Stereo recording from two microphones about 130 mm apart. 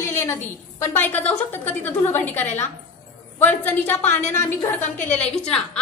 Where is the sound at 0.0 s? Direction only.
20° left (ahead or behind).